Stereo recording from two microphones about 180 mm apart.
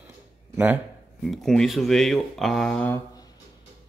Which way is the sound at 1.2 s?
Centre (ahead or behind).